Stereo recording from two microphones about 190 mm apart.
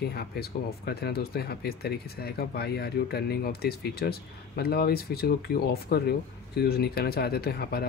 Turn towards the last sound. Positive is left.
turn(degrees=55)  # may be behind; listen again after turning